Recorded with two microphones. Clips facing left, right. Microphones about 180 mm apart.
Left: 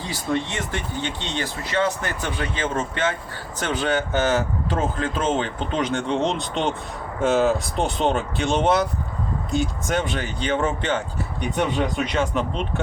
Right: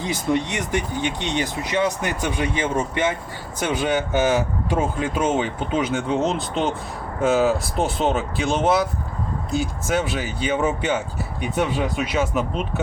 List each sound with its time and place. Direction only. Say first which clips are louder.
0.0 s speech: right 3 dB; 20° right (ahead or behind)